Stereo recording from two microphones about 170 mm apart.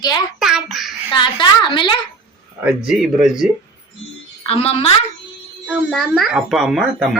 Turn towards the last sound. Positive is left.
turn(degrees=0)  # may be behind; listen again after turning